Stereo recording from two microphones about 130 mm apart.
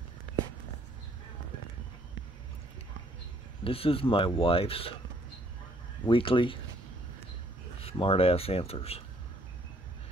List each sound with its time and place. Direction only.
3.6 s speech: 45° left (ahead or behind)
6.0 s speech: 40° left (ahead or behind)
7.8 s speech: 45° left (ahead or behind)